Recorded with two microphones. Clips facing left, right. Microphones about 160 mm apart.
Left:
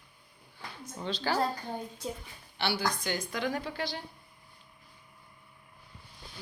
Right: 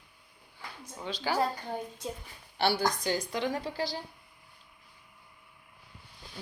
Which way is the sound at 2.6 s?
45° right (ahead or behind).